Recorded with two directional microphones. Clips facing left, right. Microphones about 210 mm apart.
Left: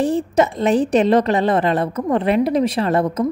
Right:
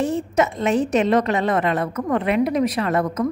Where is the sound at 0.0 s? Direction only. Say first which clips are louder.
Left 3 dB; 35° left (ahead or behind).